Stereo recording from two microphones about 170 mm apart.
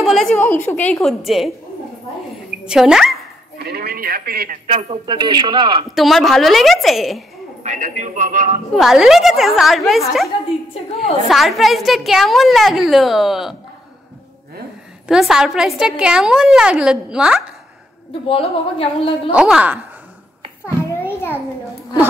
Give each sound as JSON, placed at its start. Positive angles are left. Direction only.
{"t": 0.0, "sound": "a woman's voice", "side_deg": 0}
{"t": 2.6, "sound": "a woman's voice", "side_deg": -5}
{"t": 3.5, "sound": "speech", "side_deg": -70}
{"t": 4.6, "sound": "a man's voice", "side_deg": -35}
{"t": 5.9, "sound": "a woman's voice", "side_deg": 0}
{"t": 7.6, "sound": "speech", "side_deg": -45}
{"t": 8.7, "sound": "a woman's voice", "side_deg": 0}
{"t": 15.0, "sound": "a woman's voice", "side_deg": -5}
{"t": 18.3, "sound": "a woman's voice", "side_deg": 35}
{"t": 19.3, "sound": "a woman's voice", "side_deg": -5}
{"t": 20.6, "sound": "a sound", "side_deg": 15}